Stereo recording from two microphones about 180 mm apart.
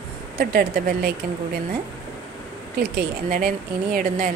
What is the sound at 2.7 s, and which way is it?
Speech, 55° right (ahead or behind).